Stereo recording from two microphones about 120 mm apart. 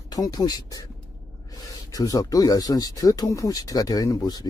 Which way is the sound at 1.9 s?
30° left (ahead or behind).